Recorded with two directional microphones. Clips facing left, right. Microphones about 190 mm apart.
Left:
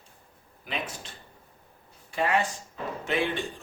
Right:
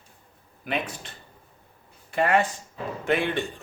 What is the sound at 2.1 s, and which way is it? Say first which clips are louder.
Speech: right 4 dB; 60° right (ahead or behind).